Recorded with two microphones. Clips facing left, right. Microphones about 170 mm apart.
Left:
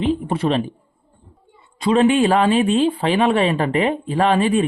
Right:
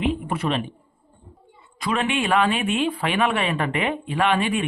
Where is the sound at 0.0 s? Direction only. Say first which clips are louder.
Left 4 dB; 30° left (ahead or behind).